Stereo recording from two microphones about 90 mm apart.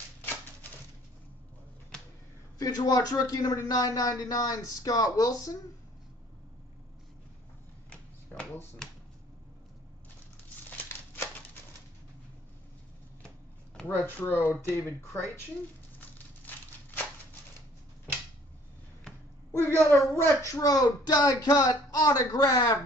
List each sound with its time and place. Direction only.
2.6 s speech: 45° left (ahead or behind)
8.3 s finger snapping: 15° left (ahead or behind)
10.7 s crumpling: 20° left (ahead or behind)
13.8 s speech: 25° left (ahead or behind)
19.6 s speech: 25° left (ahead or behind)
20.5 s speech: 40° left (ahead or behind)